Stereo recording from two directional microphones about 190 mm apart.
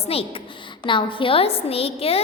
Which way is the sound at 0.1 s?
30° left (ahead or behind).